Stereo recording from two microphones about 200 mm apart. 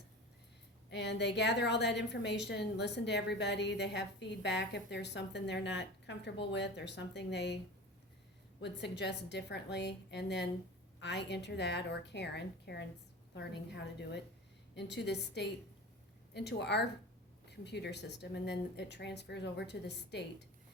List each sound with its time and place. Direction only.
0.9 s a woman's voice: 60° left (ahead or behind)
8.6 s a woman's voice: 60° left (ahead or behind)